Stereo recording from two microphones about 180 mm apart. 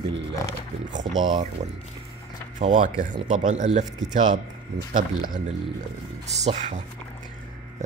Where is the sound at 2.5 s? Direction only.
40° right (ahead or behind).